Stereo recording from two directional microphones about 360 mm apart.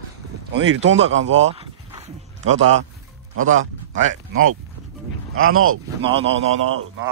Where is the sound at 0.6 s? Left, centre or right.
Right.